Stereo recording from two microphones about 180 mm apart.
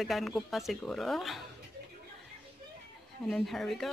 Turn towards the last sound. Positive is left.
turn(degrees=0)  # may be behind; listen again after turning